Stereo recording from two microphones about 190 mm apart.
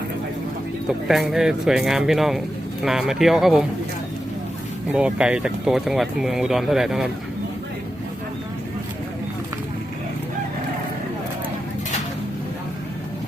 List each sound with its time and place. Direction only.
1.0 s speech: centre (ahead or behind)
4.9 s speech: 5° right (ahead or behind)